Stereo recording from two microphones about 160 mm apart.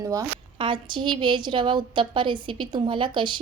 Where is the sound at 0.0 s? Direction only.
20° right (ahead or behind).